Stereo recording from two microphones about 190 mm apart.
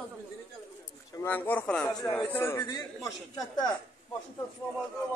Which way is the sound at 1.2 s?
10° left (ahead or behind).